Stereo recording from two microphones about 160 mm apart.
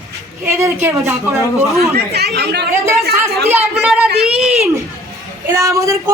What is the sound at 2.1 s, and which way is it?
Speech, 90° right.